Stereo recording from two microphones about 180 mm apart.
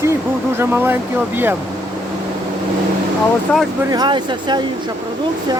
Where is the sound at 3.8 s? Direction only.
20° right (ahead or behind).